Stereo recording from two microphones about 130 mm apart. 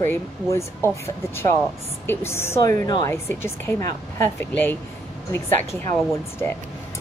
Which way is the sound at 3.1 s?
20° left (ahead or behind).